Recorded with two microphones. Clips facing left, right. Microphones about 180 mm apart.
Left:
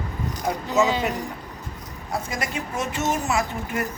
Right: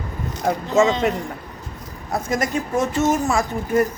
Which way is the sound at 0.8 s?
10° left (ahead or behind).